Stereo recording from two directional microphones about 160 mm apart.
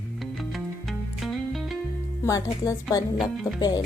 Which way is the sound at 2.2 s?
20° left (ahead or behind).